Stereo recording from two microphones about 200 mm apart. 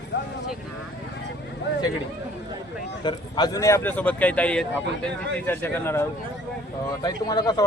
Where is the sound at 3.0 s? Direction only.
20° left (ahead or behind).